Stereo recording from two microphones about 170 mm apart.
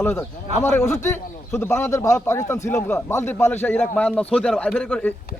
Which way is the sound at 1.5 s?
15° left (ahead or behind).